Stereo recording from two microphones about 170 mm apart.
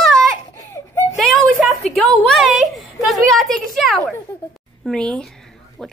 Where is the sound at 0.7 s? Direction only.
20° left (ahead or behind).